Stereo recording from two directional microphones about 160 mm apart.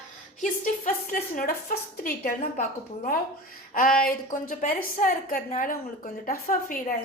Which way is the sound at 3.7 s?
60° left (ahead or behind).